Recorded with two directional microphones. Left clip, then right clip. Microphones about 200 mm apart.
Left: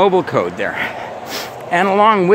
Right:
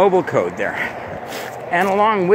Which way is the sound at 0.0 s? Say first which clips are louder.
Left 1 dB; 25° left (ahead or behind).